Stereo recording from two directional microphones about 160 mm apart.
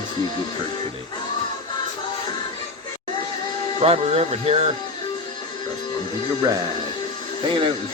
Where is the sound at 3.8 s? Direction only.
40° right (ahead or behind).